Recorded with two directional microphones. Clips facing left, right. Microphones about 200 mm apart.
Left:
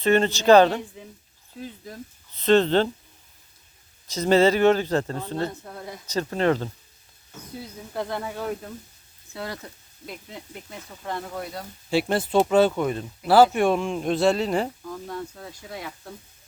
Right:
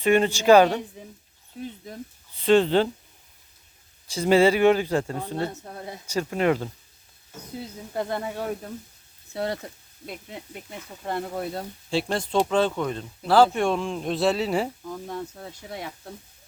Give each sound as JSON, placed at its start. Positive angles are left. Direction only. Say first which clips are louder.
{"t": 0.0, "sound": "speech", "louder": "even", "side_deg": -15}
{"t": 2.3, "sound": "speech", "louder": "even", "side_deg": -10}
{"t": 4.1, "sound": "speech", "louder": "even", "side_deg": -10}
{"t": 5.6, "sound": "speech", "louder": "even", "side_deg": -25}
{"t": 6.1, "sound": "speech", "louder": "even", "side_deg": -10}
{"t": 7.9, "sound": "speech", "louder": "right 1 dB", "side_deg": -25}
{"t": 10.7, "sound": "speech", "louder": "right 2 dB", "side_deg": -25}
{"t": 11.9, "sound": "speech", "louder": "left 3 dB", "side_deg": 5}
{"t": 14.8, "sound": "speech", "louder": "even", "side_deg": -20}